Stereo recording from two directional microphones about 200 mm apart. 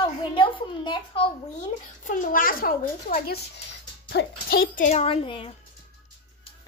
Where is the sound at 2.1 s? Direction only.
45° left (ahead or behind); by 5.5 s 25° left (ahead or behind).